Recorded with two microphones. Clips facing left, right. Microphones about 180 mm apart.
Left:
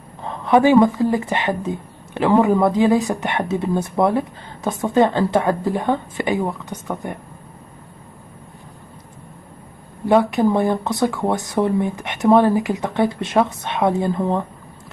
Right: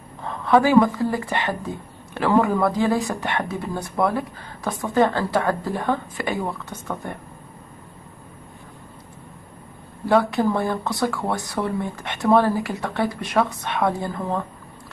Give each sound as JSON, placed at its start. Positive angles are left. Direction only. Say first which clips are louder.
{"t": 0.2, "sound": "speech", "louder": "left 3 dB", "side_deg": 20}
{"t": 10.0, "sound": "speech", "louder": "left 3 dB", "side_deg": 20}